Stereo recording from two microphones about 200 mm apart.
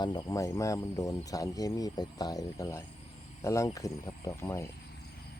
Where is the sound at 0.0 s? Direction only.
20° left (ahead or behind).